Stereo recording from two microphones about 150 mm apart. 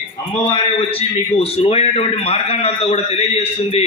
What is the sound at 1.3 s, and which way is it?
A man's voice, 40° left (ahead or behind).